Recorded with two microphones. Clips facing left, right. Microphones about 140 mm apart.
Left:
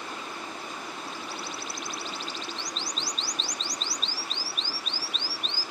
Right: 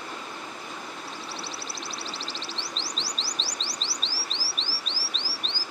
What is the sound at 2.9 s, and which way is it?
Chirp, 30° right (ahead or behind).